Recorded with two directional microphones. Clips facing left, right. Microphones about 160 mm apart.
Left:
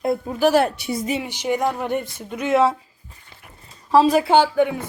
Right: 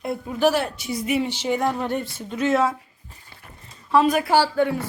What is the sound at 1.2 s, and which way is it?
Speech, 10° left (ahead or behind).